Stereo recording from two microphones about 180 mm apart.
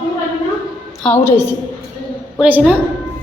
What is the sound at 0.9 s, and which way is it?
Speech, 10° left (ahead or behind).